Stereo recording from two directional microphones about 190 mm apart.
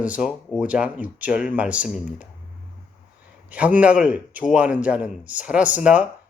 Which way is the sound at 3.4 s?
5° right (ahead or behind).